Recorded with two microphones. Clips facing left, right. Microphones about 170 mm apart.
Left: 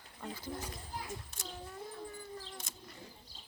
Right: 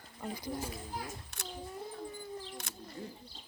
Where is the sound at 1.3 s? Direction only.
70° right (ahead or behind).